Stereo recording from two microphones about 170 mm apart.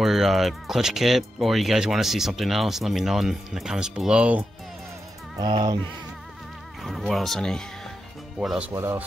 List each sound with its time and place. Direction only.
0.0 s speech: centre (ahead or behind)
5.4 s speech: 25° right (ahead or behind)
6.8 s speech: centre (ahead or behind)